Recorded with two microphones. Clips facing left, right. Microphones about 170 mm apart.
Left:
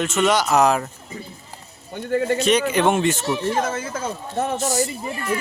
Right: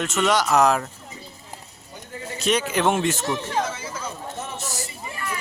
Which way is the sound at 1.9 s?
70° left (ahead or behind).